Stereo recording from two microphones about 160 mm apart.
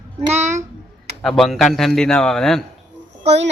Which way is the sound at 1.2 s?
5° left (ahead or behind).